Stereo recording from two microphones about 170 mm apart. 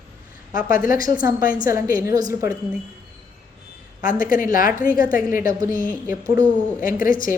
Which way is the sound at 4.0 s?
55° left (ahead or behind).